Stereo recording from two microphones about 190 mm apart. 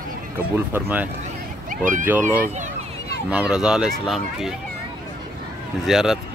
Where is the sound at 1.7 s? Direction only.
45° right (ahead or behind).